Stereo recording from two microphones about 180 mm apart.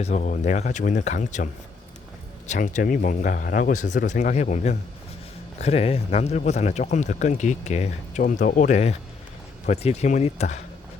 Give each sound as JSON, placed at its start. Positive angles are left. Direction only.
{"t": 0.0, "sound": "speech", "side_deg": 40}
{"t": 2.5, "sound": "speech", "side_deg": 45}